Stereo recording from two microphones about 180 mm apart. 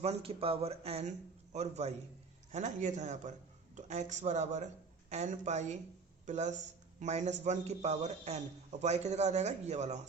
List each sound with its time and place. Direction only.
0.0 s a man's voice: 35° right (ahead or behind)